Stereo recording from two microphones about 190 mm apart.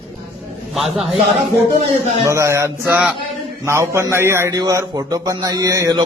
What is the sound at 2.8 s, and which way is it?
Speech, 5° right (ahead or behind).